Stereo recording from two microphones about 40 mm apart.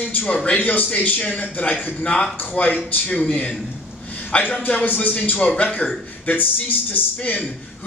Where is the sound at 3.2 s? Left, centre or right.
Left.